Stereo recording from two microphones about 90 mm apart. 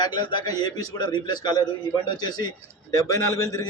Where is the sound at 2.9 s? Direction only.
35° left (ahead or behind).